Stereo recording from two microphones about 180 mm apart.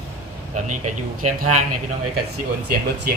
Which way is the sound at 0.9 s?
40° right (ahead or behind).